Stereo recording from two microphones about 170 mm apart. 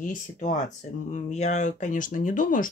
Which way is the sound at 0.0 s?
50° left (ahead or behind).